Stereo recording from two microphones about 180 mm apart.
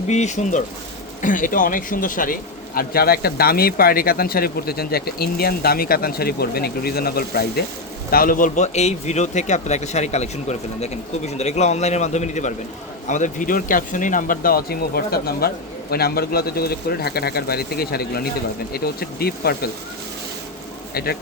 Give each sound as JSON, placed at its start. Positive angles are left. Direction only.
{"t": 0.1, "sound": "a man's voice", "side_deg": 40}
{"t": 20.9, "sound": "speech", "side_deg": 60}